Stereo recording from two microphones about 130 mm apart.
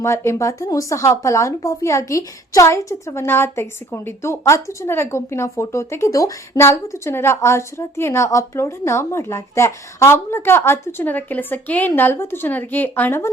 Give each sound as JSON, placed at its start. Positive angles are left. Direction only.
{"t": 0.0, "sound": "speech", "side_deg": 20}